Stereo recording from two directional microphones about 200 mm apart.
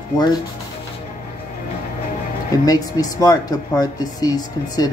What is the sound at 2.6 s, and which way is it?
Speech, 20° left (ahead or behind).